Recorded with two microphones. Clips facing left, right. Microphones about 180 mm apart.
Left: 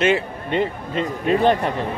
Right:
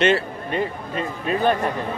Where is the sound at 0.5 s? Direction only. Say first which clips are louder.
Left 3 dB; 25° left (ahead or behind).